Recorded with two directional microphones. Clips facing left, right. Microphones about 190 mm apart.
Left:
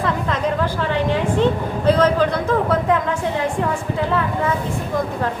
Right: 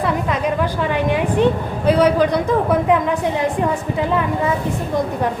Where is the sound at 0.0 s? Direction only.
10° right (ahead or behind).